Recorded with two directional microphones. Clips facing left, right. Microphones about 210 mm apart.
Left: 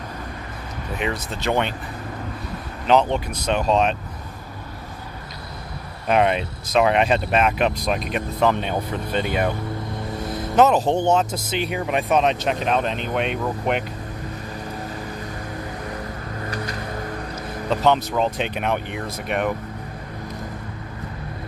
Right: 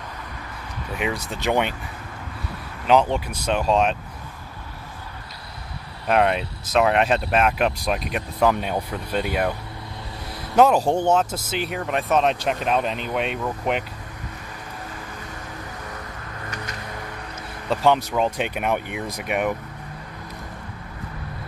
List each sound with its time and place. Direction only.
0.9 s speech: 10° right (ahead or behind)
2.9 s speech: 5° right (ahead or behind)
6.0 s speech: centre (ahead or behind)
10.1 s music: 45° left (ahead or behind)
10.5 s speech: 10° right (ahead or behind)
16.4 s vehicle: 35° left (ahead or behind)
17.6 s speech: 10° right (ahead or behind)